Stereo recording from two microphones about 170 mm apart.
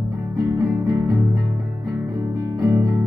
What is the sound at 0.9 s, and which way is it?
Music, 20° right (ahead or behind).